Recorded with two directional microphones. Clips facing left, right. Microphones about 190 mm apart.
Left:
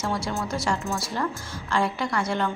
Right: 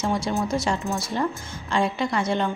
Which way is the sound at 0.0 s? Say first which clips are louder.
Right 4 dB; 20° right (ahead or behind).